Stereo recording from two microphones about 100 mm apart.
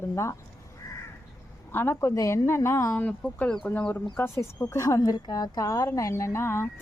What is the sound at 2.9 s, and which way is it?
A woman's voice, 15° left (ahead or behind).